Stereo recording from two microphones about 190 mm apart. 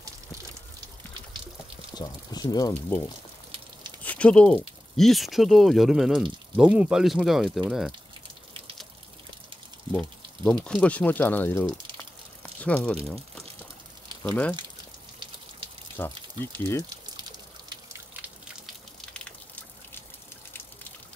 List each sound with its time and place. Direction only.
2.0 s speech: 20° left (ahead or behind)
4.0 s speech: 5° left (ahead or behind)
9.9 s speech: 5° left (ahead or behind)
16.0 s speech: 10° left (ahead or behind)
18.9 s drip: 5° left (ahead or behind)